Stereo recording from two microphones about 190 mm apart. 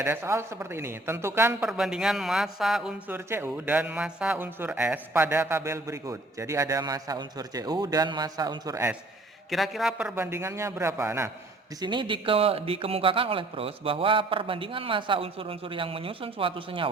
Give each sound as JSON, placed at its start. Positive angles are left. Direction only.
{"t": 0.0, "sound": "a man's voice", "side_deg": -15}
{"t": 9.5, "sound": "a man's voice", "side_deg": 0}
{"t": 11.8, "sound": "speech", "side_deg": -25}